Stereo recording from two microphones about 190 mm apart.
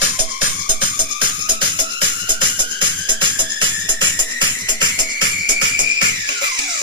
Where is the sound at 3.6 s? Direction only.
25° right (ahead or behind).